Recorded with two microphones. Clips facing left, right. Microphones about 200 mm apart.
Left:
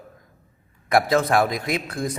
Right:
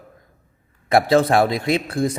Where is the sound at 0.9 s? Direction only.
30° right (ahead or behind).